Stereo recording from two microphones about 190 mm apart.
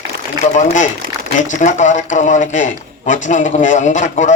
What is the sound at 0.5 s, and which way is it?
A man's voice, 40° left (ahead or behind).